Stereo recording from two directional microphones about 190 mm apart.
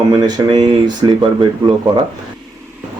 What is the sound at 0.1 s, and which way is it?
Speech, 20° right (ahead or behind).